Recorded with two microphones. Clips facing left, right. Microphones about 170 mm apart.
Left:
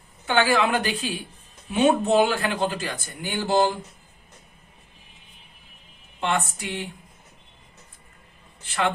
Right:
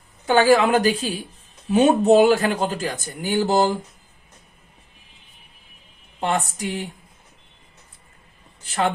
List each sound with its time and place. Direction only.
0.3 s speech: 40° right (ahead or behind)
6.1 s speech: 40° right (ahead or behind)
8.6 s speech: 40° right (ahead or behind)